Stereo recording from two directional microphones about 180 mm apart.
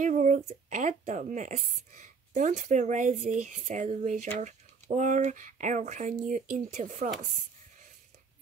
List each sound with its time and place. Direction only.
0.0 s speech: 45° right (ahead or behind)